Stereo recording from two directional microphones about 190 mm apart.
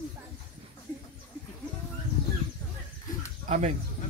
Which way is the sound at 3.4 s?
35° right (ahead or behind).